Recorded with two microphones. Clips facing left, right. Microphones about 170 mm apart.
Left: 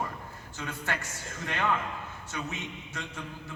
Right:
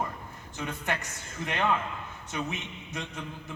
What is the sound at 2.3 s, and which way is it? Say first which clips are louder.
Speech: right 3 dB; 20° right (ahead or behind).